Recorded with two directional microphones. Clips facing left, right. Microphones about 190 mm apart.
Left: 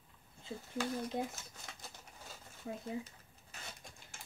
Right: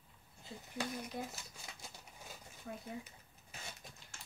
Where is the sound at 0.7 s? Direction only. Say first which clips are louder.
Left 4 dB; 15° right (ahead or behind).